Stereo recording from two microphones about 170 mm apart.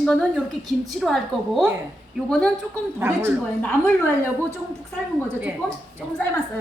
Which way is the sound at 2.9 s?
15° right (ahead or behind).